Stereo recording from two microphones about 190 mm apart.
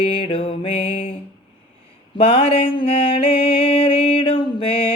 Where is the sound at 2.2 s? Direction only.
30° left (ahead or behind).